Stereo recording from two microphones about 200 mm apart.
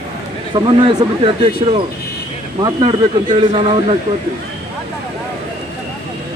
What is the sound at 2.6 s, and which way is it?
Speech, 20° right (ahead or behind).